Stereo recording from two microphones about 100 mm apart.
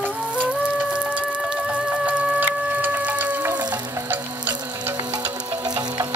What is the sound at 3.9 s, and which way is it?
Frying, 20° right (ahead or behind).